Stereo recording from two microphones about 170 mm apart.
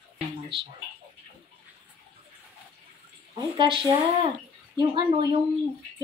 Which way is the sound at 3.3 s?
30° right (ahead or behind).